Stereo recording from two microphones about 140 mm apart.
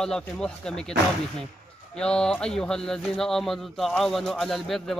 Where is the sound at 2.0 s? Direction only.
5° left (ahead or behind).